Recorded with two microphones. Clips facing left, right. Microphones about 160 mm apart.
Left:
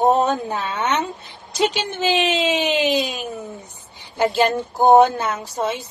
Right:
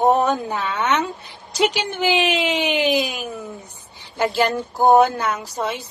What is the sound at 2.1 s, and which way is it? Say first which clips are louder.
Speech: left 1 dB; 20° left (ahead or behind).